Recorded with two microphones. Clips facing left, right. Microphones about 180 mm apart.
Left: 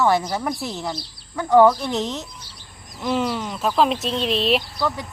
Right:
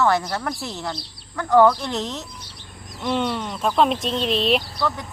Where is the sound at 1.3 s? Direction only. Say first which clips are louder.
Left 1 dB; 15° left (ahead or behind).